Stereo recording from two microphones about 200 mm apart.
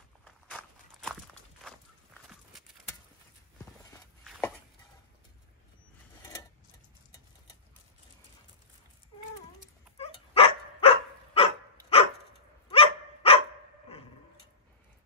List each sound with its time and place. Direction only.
0.2 s walk: 5° left (ahead or behind)
9.9 s dog: 30° left (ahead or behind)